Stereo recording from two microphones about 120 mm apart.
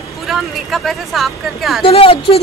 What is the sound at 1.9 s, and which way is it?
Speech, 50° left (ahead or behind).